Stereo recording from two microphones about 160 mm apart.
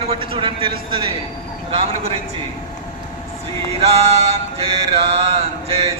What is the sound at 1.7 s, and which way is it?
Speech, 40° right (ahead or behind).